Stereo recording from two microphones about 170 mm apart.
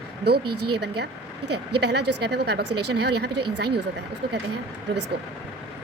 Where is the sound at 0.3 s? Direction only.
70° right (ahead or behind).